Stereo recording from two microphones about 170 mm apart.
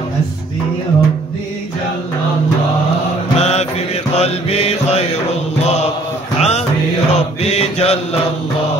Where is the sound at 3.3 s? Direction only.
40° left (ahead or behind).